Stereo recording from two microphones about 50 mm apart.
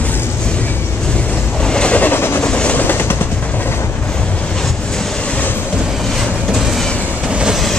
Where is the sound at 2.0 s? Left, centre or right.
Left.